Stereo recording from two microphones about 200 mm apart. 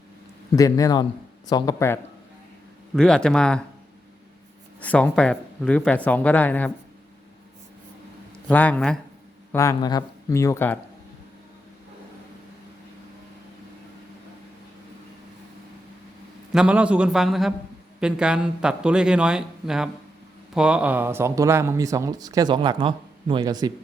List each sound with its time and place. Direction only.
0.5 s speech: 15° left (ahead or behind)
2.9 s speech: 5° left (ahead or behind)
4.8 s speech: 5° left (ahead or behind)
8.4 s speech: 10° left (ahead or behind)
9.5 s speech: 15° left (ahead or behind)
16.5 s speech: 5° right (ahead or behind); by 23.7 s 20° right (ahead or behind)